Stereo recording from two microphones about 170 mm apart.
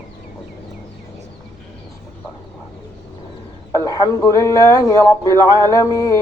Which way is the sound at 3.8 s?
20° left (ahead or behind).